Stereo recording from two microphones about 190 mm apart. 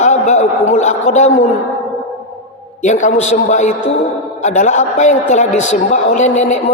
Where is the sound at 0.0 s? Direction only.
40° left (ahead or behind).